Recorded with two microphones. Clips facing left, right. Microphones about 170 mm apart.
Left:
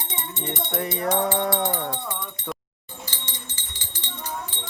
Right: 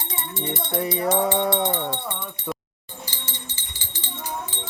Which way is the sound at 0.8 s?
Centre (ahead or behind).